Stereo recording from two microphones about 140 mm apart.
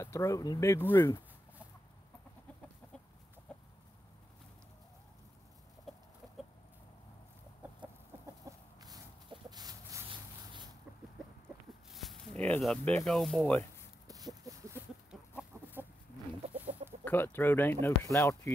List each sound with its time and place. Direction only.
0.0 s speech: 20° left (ahead or behind)
3.5 s chicken: 5° left (ahead or behind)
8.1 s chicken: 15° right (ahead or behind)
8.5 s a sound: 25° right (ahead or behind)
11.4 s a sound: centre (ahead or behind)
12.4 s speech: 10° left (ahead or behind)
14.0 s a sound: 25° right (ahead or behind)
16.5 s chicken: 10° right (ahead or behind)
17.0 s speech: 15° left (ahead or behind)